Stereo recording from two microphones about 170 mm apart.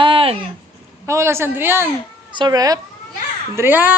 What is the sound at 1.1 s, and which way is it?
Speech, 15° right (ahead or behind).